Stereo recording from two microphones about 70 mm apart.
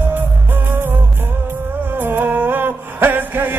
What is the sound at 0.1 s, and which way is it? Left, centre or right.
Music, right.